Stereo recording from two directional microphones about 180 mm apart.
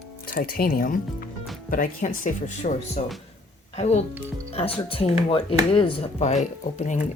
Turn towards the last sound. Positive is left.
turn(degrees=40)  # may be behind; listen again after turning